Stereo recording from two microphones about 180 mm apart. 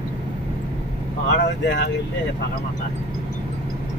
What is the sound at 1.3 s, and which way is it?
Vehicle, 70° left (ahead or behind).